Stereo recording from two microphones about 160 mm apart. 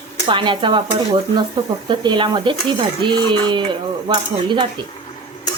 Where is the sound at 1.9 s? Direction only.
30° right (ahead or behind).